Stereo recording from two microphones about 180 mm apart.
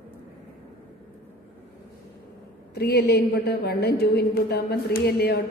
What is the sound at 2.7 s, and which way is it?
A woman's voice, 65° left (ahead or behind).